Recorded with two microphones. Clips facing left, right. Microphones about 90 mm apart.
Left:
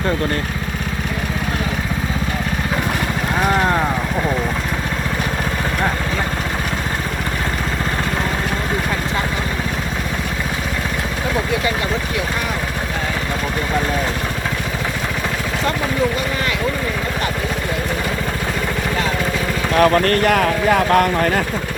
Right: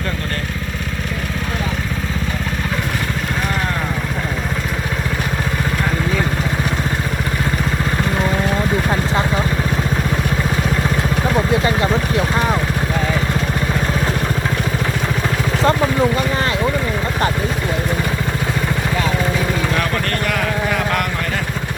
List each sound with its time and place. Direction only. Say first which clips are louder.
19.7 s speech: left 6 dB; 45° left (ahead or behind)